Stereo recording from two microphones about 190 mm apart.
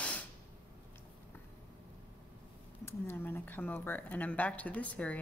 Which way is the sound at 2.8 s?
10° left (ahead or behind).